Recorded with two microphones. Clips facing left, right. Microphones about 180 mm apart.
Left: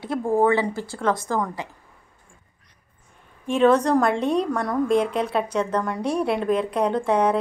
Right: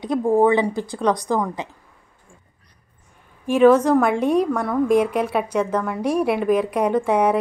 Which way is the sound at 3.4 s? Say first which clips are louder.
Right 4 dB; 5° right (ahead or behind).